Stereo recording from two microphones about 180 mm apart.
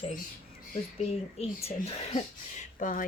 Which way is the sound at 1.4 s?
35° left (ahead or behind).